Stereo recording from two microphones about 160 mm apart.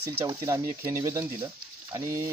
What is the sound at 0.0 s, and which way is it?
Speech, 15° right (ahead or behind).